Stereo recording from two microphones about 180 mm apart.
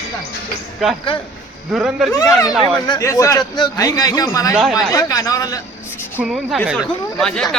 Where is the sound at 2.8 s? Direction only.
20° left (ahead or behind).